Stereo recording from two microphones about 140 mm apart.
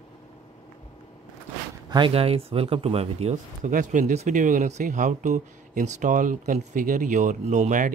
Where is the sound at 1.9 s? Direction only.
35° right (ahead or behind).